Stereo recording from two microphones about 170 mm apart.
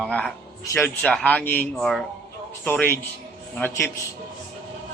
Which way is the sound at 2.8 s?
10° left (ahead or behind).